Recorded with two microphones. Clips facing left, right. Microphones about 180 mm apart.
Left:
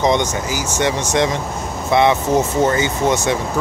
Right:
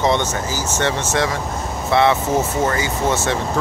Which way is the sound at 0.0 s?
15° left (ahead or behind).